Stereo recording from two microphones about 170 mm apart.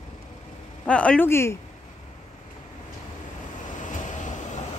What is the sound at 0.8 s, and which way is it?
Speech, 5° left (ahead or behind).